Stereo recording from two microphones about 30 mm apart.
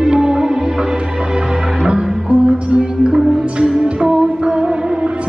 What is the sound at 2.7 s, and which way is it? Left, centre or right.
Music, right.